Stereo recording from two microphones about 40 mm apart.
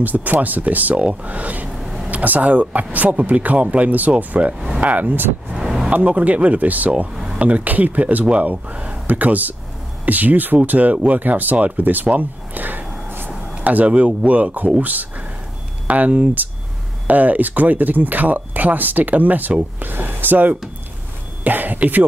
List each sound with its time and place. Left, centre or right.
0.0 s speech: right
1.8 s a sound: centre
2.0 s speech: right
5.5 s vehicle: centre
6.0 s speech: right
12.1 s a sound: right
13.7 s speech: right
19.8 s speech: right